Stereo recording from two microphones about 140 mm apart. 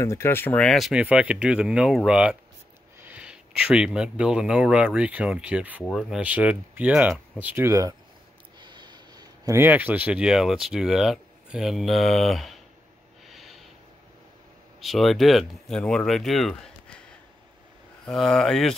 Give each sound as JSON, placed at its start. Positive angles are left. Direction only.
{"t": 0.0, "sound": "speech", "side_deg": 20}
{"t": 8.5, "sound": "a sound", "side_deg": -35}
{"t": 9.6, "sound": "speech", "side_deg": -10}
{"t": 13.3, "sound": "snort", "side_deg": 0}
{"t": 14.8, "sound": "speech", "side_deg": 0}
{"t": 18.0, "sound": "speech", "side_deg": 5}